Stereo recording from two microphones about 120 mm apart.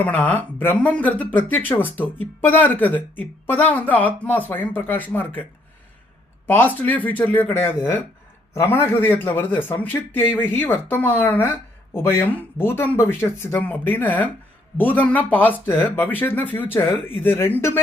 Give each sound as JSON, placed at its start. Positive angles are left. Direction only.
{"t": 0.0, "sound": "speech", "side_deg": 15}
{"t": 6.5, "sound": "speech", "side_deg": 15}